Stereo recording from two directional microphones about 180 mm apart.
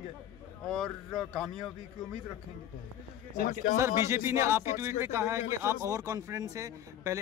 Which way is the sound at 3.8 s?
15° right (ahead or behind).